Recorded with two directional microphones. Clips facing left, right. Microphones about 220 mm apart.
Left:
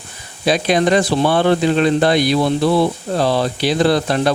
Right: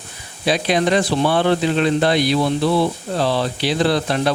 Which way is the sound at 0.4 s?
45° left (ahead or behind).